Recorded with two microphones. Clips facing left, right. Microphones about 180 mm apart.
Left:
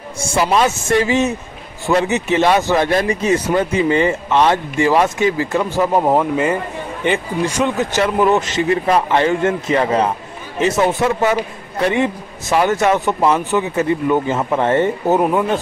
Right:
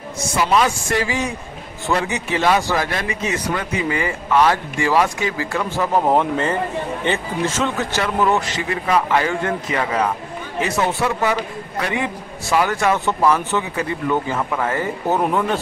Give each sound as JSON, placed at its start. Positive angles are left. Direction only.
{"t": 0.2, "sound": "a man's voice", "side_deg": 25}
{"t": 2.9, "sound": "a man's voice", "side_deg": 35}